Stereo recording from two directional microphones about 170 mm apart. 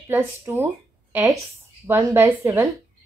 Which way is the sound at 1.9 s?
15° right (ahead or behind).